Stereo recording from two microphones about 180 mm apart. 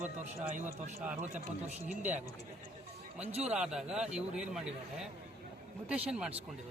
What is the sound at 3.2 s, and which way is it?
Speech, 35° right (ahead or behind).